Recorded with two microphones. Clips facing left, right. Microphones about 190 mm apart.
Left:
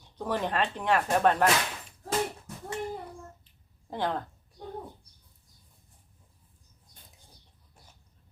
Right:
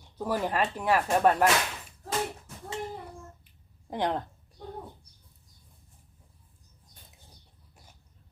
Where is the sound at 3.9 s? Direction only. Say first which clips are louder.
Right 2 dB; 15° right (ahead or behind).